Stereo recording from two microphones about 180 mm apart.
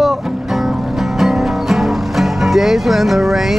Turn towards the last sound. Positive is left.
turn(degrees=0)  # may be behind; listen again after turning